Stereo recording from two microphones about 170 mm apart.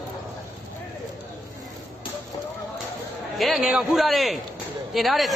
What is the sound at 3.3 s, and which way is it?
Speech, centre (ahead or behind).